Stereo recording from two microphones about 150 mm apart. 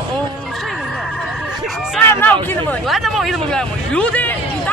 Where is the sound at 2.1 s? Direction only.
10° left (ahead or behind).